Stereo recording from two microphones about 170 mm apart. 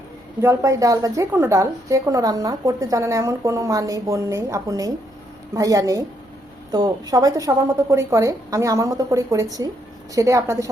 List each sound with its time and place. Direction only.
0.4 s a woman's voice: 20° right (ahead or behind)